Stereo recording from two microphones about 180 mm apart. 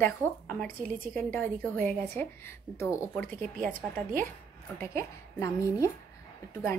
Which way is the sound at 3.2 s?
50° right (ahead or behind).